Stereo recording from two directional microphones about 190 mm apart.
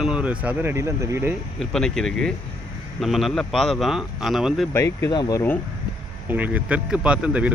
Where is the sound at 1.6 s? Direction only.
5° left (ahead or behind).